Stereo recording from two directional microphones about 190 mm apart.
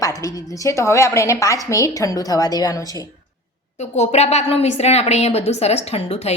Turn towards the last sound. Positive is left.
turn(degrees=35)  # may be behind; listen again after turning